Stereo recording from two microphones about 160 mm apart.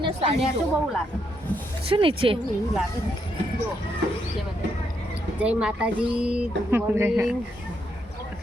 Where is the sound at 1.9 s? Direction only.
35° right (ahead or behind).